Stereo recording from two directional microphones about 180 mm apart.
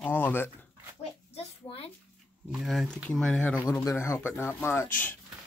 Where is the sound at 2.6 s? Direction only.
Centre (ahead or behind).